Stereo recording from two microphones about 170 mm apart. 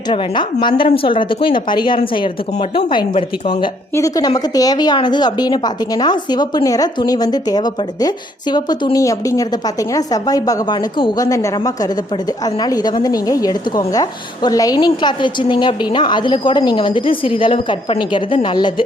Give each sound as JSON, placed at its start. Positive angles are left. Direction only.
{"t": 0.1, "sound": "a woman's voice", "side_deg": 30}
{"t": 3.9, "sound": "a woman's voice", "side_deg": 20}